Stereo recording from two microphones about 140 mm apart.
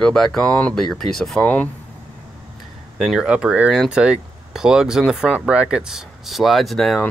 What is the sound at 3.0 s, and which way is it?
Speech, 5° right (ahead or behind).